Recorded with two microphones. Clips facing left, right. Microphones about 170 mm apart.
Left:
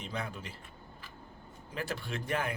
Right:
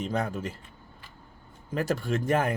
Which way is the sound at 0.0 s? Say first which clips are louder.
Right 10 dB; 45° right (ahead or behind).